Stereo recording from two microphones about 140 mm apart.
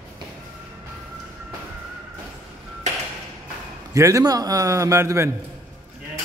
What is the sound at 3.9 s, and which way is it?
A man's voice, 20° right (ahead or behind).